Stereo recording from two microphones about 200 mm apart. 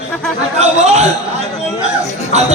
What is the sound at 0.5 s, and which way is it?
Speech, 35° right (ahead or behind).